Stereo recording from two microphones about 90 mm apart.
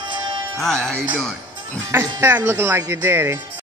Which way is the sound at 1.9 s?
25° right (ahead or behind).